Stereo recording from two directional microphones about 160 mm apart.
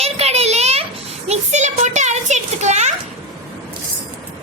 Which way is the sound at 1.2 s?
45° right (ahead or behind).